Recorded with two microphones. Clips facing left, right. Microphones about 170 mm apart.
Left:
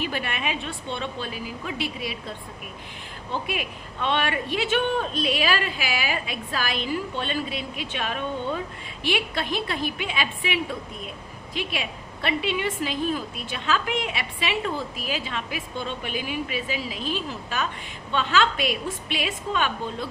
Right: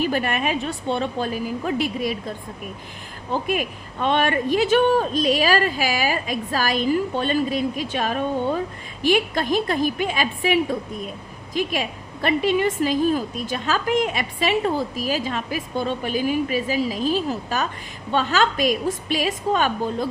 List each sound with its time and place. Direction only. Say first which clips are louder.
0.0 s speech: right 7 dB; 45° right (ahead or behind)
3.3 s a woman's voice: right 6 dB; 45° right (ahead or behind)